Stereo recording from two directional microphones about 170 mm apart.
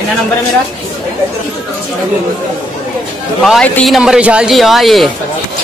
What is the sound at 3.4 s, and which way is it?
A man's voice, centre (ahead or behind).